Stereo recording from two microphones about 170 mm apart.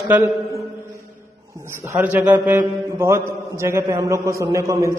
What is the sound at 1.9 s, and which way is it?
Mantra, 10° right (ahead or behind).